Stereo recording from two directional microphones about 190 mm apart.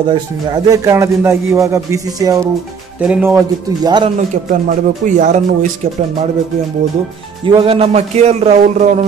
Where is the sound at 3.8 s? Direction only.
25° right (ahead or behind).